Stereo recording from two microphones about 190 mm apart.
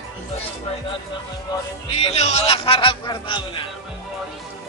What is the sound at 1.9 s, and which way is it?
Speech, 30° left (ahead or behind).